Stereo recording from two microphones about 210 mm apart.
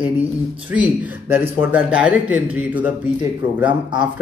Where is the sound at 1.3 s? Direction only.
10° right (ahead or behind).